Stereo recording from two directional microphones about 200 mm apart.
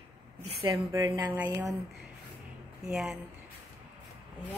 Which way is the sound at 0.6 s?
20° right (ahead or behind).